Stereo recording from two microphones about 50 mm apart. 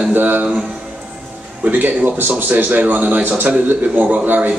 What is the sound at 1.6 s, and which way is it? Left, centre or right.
A man's voice, right.